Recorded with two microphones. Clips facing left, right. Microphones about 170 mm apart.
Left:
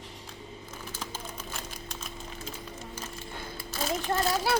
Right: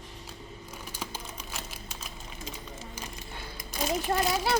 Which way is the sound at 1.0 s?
10° right (ahead or behind).